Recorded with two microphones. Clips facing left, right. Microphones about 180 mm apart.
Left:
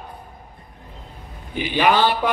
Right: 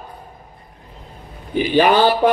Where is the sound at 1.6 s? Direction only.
40° right (ahead or behind).